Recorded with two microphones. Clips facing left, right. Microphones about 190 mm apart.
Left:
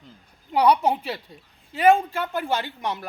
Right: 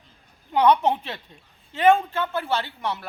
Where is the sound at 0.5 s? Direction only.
10° left (ahead or behind).